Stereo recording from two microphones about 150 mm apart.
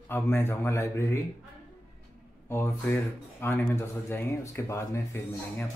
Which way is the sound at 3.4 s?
15° left (ahead or behind).